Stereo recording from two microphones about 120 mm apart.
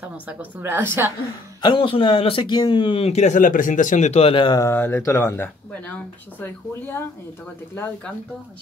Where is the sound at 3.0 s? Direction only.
65° left (ahead or behind).